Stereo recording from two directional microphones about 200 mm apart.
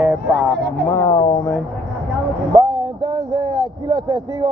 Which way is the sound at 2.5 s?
20° right (ahead or behind).